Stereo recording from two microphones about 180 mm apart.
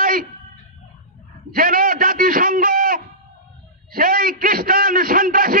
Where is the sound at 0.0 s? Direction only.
50° right (ahead or behind).